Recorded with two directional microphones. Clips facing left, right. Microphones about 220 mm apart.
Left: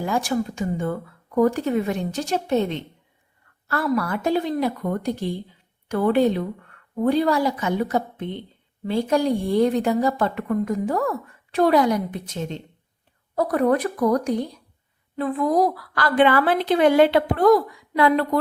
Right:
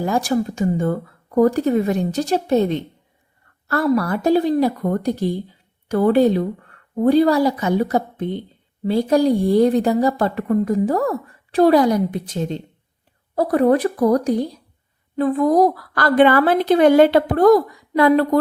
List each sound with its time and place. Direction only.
0.0 s a woman's voice: 40° right (ahead or behind)